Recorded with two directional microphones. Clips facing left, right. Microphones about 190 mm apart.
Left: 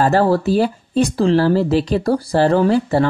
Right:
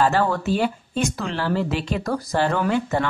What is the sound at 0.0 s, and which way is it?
Speech, 35° left (ahead or behind).